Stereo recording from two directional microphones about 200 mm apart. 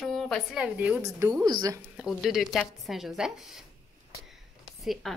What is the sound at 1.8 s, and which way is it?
A woman's voice, centre (ahead or behind).